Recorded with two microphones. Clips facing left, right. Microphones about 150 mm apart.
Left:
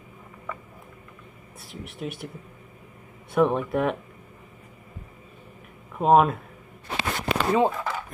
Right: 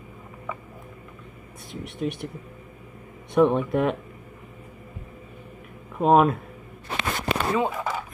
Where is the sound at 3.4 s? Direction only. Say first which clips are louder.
Right 2 dB; centre (ahead or behind).